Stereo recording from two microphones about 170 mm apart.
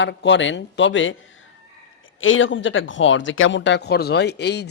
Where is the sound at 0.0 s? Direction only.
90° left.